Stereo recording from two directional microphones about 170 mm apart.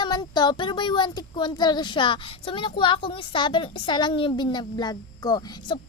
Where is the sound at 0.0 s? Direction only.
25° left (ahead or behind).